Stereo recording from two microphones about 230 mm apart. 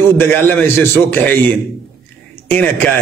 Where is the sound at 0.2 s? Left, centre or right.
Centre.